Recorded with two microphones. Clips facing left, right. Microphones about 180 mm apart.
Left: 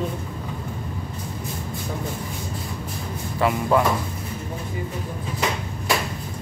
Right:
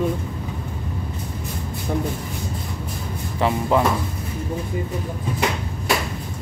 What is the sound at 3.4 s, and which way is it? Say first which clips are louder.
Speech: even; 20° right (ahead or behind).